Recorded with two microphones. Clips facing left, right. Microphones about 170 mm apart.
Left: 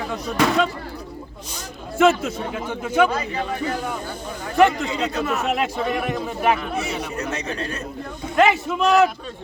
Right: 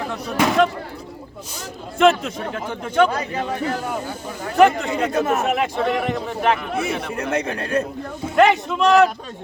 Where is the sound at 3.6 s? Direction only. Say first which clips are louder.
Right 1 dB; 70° right (ahead or behind).